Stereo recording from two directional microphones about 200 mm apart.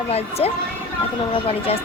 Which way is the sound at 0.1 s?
30° left (ahead or behind).